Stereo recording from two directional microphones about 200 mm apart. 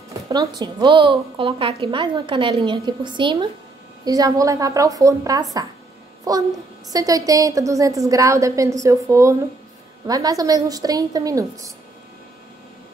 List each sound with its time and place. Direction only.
0.3 s a woman's voice: 20° right (ahead or behind)